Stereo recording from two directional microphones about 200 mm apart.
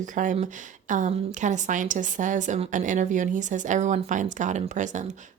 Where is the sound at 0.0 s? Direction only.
40° right (ahead or behind).